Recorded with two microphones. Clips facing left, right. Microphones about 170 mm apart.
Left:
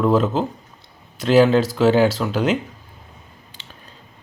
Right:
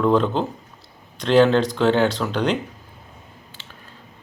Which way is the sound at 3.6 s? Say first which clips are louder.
Left 3 dB; 20° left (ahead or behind).